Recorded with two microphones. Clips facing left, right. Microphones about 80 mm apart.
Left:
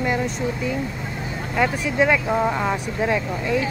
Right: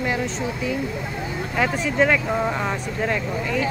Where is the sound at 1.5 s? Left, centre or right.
Centre.